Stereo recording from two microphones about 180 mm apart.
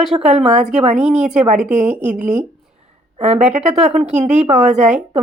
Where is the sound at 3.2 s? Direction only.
40° right (ahead or behind).